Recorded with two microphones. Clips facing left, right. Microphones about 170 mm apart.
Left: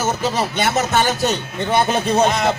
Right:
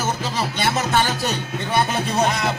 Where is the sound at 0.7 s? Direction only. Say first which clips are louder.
Left 3 dB; 45° left (ahead or behind).